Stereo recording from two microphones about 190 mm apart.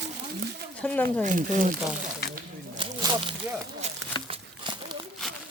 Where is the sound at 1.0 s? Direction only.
45° right (ahead or behind).